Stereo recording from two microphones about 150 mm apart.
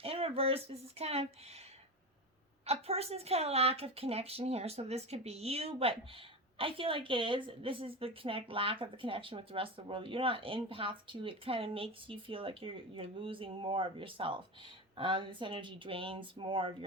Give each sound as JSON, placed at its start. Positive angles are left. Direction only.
{"t": 0.0, "sound": "speech", "side_deg": -40}
{"t": 2.6, "sound": "a woman's voice", "side_deg": -45}